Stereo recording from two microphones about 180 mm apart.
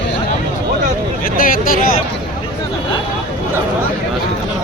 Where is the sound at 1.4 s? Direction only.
50° left (ahead or behind).